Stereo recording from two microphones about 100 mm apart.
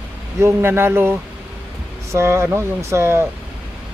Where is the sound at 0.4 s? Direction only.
20° right (ahead or behind).